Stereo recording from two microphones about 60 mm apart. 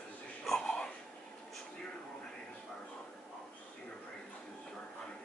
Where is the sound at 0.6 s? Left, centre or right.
Centre.